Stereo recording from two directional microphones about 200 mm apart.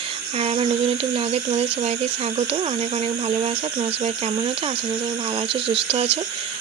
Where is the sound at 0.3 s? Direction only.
30° right (ahead or behind).